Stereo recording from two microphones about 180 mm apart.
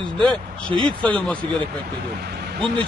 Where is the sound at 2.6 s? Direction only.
25° right (ahead or behind).